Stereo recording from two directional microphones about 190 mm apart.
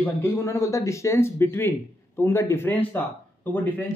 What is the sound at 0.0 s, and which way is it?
Speech, 10° left (ahead or behind).